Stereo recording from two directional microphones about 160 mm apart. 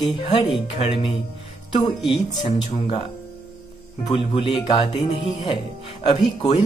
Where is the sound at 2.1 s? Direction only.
30° left (ahead or behind).